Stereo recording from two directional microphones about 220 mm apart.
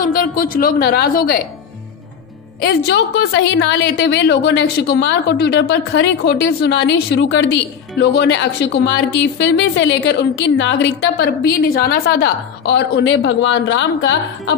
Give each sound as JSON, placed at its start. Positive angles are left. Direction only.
{"t": 0.0, "sound": "a woman's voice", "side_deg": 40}
{"t": 2.6, "sound": "a woman's voice", "side_deg": 50}